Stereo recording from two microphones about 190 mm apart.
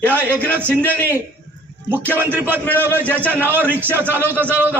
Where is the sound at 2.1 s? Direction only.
10° right (ahead or behind).